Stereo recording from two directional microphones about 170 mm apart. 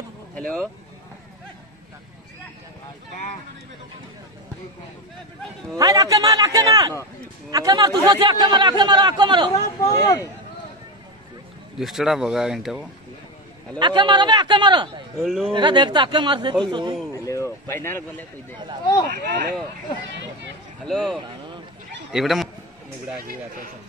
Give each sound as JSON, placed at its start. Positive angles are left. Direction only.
{"t": 0.3, "sound": "speech", "side_deg": 5}
{"t": 5.8, "sound": "speech", "side_deg": -20}
{"t": 9.8, "sound": "speech", "side_deg": 20}
{"t": 11.8, "sound": "speech", "side_deg": 0}
{"t": 13.7, "sound": "speech", "side_deg": -25}
{"t": 15.2, "sound": "speech", "side_deg": -5}
{"t": 15.5, "sound": "speech", "side_deg": -25}
{"t": 17.1, "sound": "a sound", "side_deg": 15}
{"t": 20.8, "sound": "speech", "side_deg": 0}